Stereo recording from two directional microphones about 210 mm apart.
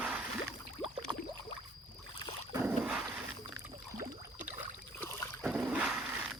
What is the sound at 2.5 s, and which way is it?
Dog, 10° right (ahead or behind).